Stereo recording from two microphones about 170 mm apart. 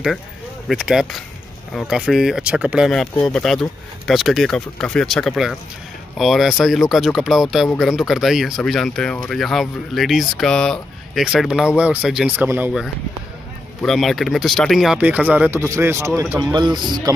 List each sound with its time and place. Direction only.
0.7 s speech: 5° right (ahead or behind)
16.5 s a man's voice: 25° right (ahead or behind)